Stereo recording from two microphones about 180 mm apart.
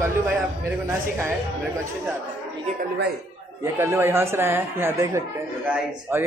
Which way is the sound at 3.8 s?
15° right (ahead or behind).